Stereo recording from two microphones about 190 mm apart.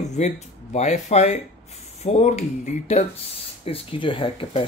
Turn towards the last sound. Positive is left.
turn(degrees=30)  # may be behind; listen again after turning